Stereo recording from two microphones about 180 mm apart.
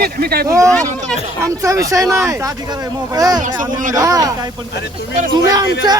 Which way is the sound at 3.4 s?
45° right (ahead or behind).